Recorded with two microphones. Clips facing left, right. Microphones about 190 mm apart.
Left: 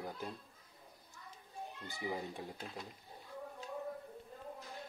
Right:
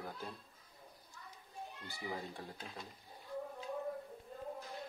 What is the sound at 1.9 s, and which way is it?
Speech, 15° left (ahead or behind).